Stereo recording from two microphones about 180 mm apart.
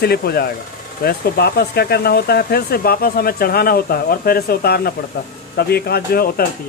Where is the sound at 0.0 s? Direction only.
60° left (ahead or behind).